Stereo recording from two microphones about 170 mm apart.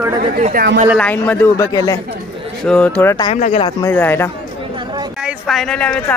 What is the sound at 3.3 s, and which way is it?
Speech, 40° left (ahead or behind).